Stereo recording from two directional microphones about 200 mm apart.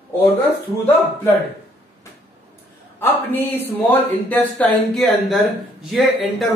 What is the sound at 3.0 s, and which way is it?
Speech, 10° left (ahead or behind).